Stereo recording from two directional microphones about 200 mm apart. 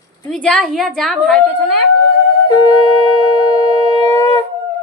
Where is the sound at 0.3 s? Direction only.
5° left (ahead or behind).